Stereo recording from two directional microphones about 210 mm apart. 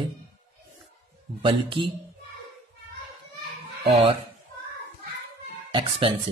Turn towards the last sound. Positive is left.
turn(degrees=-25)  # may be behind; listen again after turning